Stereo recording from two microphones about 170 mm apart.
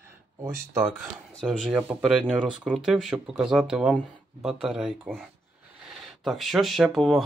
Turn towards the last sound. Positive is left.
turn(degrees=0)  # may be behind; listen again after turning